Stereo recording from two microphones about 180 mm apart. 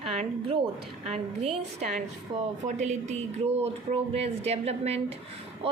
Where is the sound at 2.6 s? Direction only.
40° right (ahead or behind).